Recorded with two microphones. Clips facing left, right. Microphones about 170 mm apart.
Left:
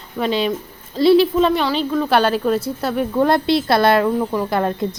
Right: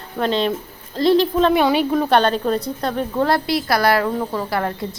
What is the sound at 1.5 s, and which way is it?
Speech, 10° right (ahead or behind).